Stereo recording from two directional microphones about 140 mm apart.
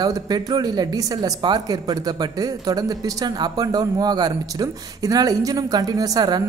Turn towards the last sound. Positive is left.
turn(degrees=-30)  # may be behind; listen again after turning